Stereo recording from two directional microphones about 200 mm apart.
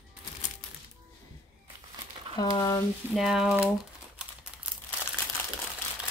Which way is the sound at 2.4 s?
20° left (ahead or behind).